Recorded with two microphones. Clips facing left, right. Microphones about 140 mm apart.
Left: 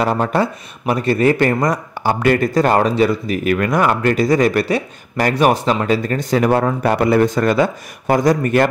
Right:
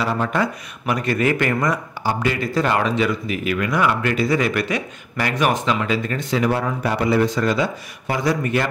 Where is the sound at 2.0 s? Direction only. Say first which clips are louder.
Left 8 dB; 55° left (ahead or behind).